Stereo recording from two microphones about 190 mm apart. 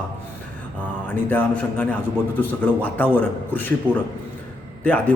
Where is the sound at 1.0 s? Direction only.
10° left (ahead or behind).